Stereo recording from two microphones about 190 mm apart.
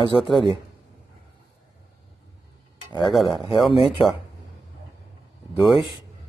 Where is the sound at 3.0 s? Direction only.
Centre (ahead or behind).